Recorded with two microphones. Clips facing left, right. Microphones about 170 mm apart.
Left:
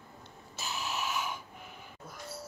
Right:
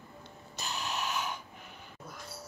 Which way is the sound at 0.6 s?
5° left (ahead or behind).